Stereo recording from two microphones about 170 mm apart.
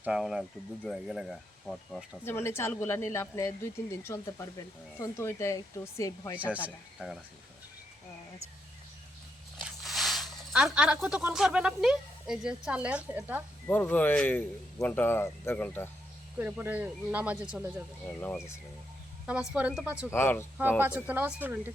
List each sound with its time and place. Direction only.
0.0 s speech: 5° right (ahead or behind)
2.2 s speech: 15° left (ahead or behind)
9.6 s speech: centre (ahead or behind)
13.7 s speech: 10° left (ahead or behind)
16.4 s speech: 10° right (ahead or behind)
19.2 s speech: 5° right (ahead or behind)
20.1 s speech: 15° left (ahead or behind)
20.6 s speech: 10° right (ahead or behind)